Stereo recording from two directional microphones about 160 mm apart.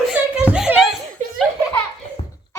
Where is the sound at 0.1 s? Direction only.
5° right (ahead or behind).